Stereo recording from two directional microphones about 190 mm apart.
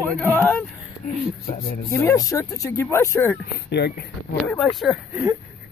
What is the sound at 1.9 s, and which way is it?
Speech, 15° left (ahead or behind).